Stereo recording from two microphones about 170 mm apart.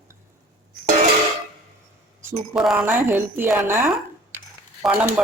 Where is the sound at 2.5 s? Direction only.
5° right (ahead or behind).